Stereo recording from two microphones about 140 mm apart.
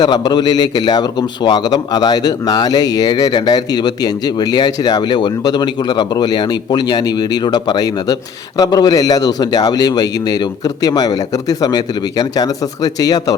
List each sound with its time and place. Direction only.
0.0 s a man's voice: 30° left (ahead or behind)